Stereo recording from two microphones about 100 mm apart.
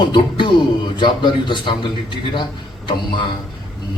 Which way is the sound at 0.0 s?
50° left (ahead or behind).